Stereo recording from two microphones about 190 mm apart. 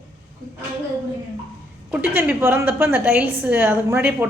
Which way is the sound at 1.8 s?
10° right (ahead or behind).